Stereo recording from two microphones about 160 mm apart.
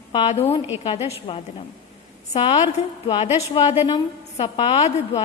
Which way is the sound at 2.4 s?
35° left (ahead or behind).